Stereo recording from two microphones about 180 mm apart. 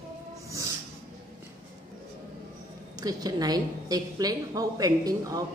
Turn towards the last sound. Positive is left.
turn(degrees=-20)  # may be behind; listen again after turning